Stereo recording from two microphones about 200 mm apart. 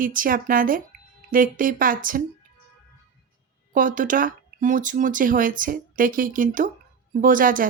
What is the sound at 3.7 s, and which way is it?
Speech, 40° right (ahead or behind).